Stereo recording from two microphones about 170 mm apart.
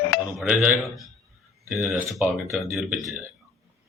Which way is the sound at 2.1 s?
Centre (ahead or behind).